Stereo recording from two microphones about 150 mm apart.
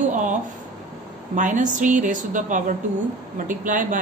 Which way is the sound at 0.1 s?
55° right (ahead or behind).